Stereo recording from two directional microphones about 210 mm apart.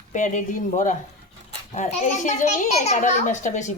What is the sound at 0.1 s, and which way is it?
Speech, 35° left (ahead or behind).